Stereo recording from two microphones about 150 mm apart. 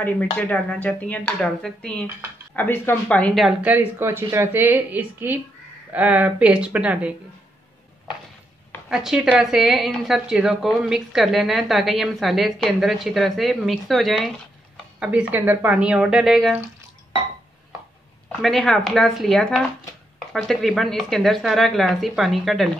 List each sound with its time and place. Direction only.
0.4 s speech: 10° left (ahead or behind)
3.7 s speech: 15° right (ahead or behind)
8.8 s a woman's voice: 5° right (ahead or behind)
18.3 s a woman's voice: centre (ahead or behind)